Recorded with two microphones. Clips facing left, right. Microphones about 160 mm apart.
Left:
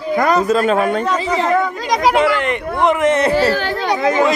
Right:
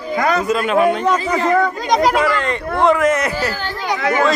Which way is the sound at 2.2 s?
20° left (ahead or behind).